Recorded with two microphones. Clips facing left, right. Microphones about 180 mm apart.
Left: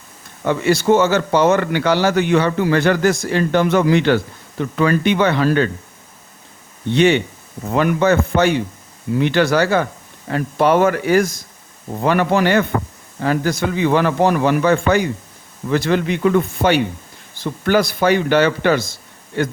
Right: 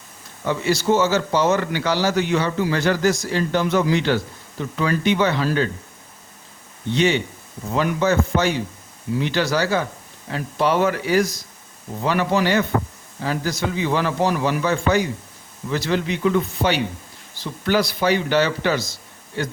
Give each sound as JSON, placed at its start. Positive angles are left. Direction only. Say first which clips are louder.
{"t": 0.4, "sound": "speech", "louder": "left 5 dB", "side_deg": 60}
{"t": 6.9, "sound": "a man's voice", "louder": "left 5 dB", "side_deg": 60}